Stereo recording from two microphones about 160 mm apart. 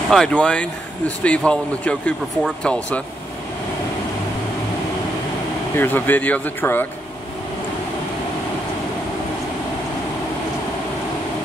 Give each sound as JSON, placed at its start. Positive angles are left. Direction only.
{"t": 0.1, "sound": "speech", "side_deg": 5}
{"t": 5.8, "sound": "speech", "side_deg": 10}